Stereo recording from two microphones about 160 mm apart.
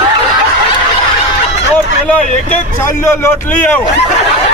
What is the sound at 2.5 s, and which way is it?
A man's voice, 15° left (ahead or behind).